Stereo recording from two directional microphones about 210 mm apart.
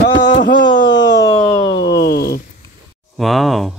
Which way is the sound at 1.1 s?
20° left (ahead or behind).